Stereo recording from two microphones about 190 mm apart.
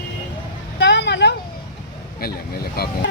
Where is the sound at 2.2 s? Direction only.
55° left (ahead or behind).